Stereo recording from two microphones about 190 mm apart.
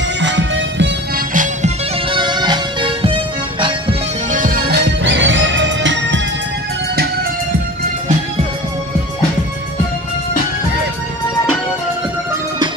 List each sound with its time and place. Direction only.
0.2 s music: 70° right (ahead or behind)
1.3 s music: 40° right (ahead or behind)
2.1 s music: 25° right (ahead or behind)
4.3 s music: 50° right (ahead or behind); by 6.2 s 75° right (ahead or behind)